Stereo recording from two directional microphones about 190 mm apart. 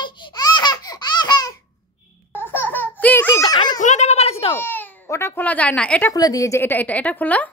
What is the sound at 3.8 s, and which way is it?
Speech, 40° left (ahead or behind).